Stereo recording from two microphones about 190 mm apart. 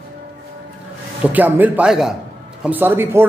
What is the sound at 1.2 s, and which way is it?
A man's voice, 10° right (ahead or behind).